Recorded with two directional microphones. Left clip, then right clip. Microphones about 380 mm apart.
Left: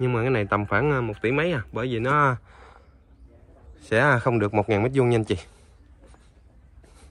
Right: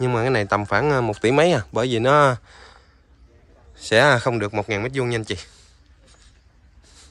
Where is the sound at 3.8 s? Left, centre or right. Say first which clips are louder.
Right 5 dB; centre.